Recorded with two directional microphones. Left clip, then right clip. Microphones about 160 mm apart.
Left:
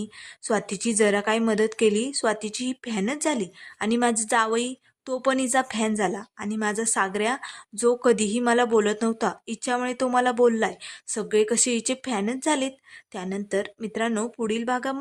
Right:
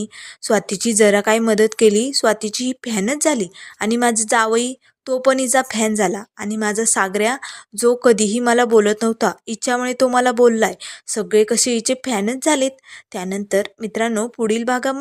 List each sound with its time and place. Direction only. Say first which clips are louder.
0.0 s a woman's voice: right 8 dB; 20° right (ahead or behind)